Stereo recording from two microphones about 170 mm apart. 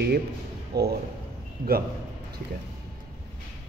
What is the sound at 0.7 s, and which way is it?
A man's voice, 70° right (ahead or behind).